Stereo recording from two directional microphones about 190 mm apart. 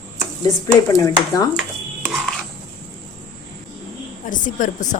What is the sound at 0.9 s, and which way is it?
Speech, 15° left (ahead or behind).